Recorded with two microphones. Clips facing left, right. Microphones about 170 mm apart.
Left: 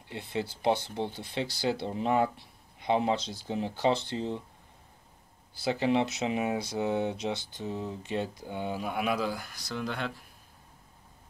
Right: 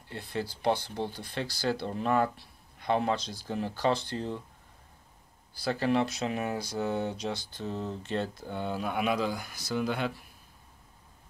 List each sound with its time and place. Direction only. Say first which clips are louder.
0.1 s speech: left 1 dB; 20° left (ahead or behind)
5.6 s speech: left 1 dB; 20° left (ahead or behind); by 10.1 s 10° right (ahead or behind)